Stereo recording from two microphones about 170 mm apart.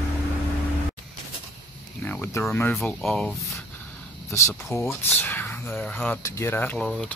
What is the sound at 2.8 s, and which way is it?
Speech, centre (ahead or behind).